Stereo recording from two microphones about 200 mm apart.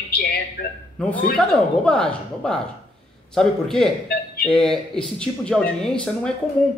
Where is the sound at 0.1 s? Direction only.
50° left (ahead or behind).